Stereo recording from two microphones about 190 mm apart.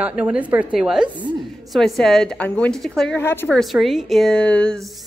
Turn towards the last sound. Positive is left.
turn(degrees=5)  # may be behind; listen again after turning